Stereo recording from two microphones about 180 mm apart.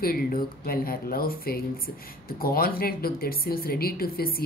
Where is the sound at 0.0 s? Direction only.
55° left (ahead or behind).